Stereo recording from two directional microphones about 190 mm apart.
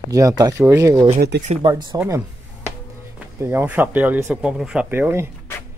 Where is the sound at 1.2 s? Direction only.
65° right (ahead or behind).